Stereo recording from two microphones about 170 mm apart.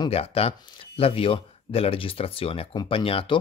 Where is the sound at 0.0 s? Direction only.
35° left (ahead or behind).